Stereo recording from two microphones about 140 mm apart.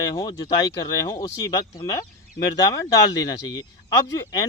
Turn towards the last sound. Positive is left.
turn(degrees=25)  # may be behind; listen again after turning